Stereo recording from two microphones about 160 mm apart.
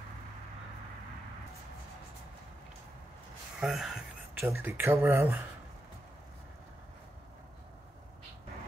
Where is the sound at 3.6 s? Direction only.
Centre (ahead or behind).